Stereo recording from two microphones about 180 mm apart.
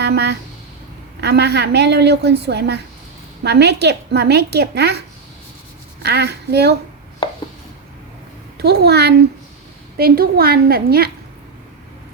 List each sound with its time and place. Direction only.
0.0 s a woman's voice: 70° right (ahead or behind)
6.0 s a child's voice: 65° right (ahead or behind)
8.5 s a woman's voice: 60° right (ahead or behind)